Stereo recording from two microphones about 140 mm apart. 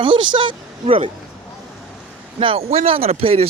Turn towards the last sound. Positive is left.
turn(degrees=-45)  # may be behind; listen again after turning